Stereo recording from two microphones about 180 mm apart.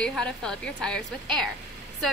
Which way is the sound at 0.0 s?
5° left (ahead or behind).